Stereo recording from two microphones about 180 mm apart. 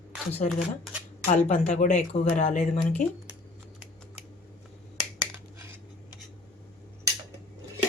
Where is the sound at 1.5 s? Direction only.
40° left (ahead or behind).